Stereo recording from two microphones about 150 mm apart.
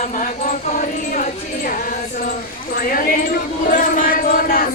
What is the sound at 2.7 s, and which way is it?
Speech, 70° left (ahead or behind).